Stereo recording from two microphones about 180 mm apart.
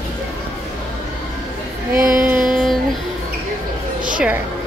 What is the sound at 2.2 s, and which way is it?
Music, 5° right (ahead or behind).